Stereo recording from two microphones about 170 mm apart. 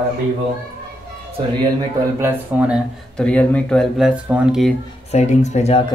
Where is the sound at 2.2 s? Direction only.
10° right (ahead or behind).